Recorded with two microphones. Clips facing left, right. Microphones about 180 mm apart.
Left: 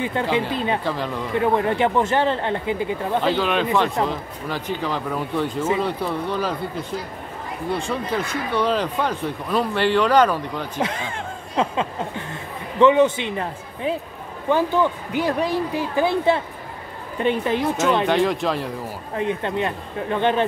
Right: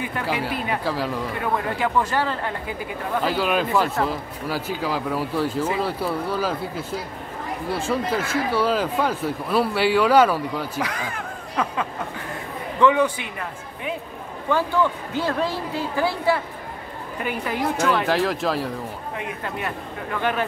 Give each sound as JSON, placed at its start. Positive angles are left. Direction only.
{"t": 0.0, "sound": "speech", "side_deg": 25}
{"t": 0.8, "sound": "speech", "side_deg": -5}
{"t": 1.4, "sound": "speech", "side_deg": 25}
{"t": 3.2, "sound": "speech", "side_deg": -5}
{"t": 10.8, "sound": "speech", "side_deg": 25}
{"t": 18.0, "sound": "speech", "side_deg": 0}
{"t": 19.1, "sound": "speech", "side_deg": 25}